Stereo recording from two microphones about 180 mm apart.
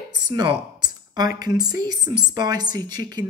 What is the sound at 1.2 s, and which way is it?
Speech, 20° right (ahead or behind).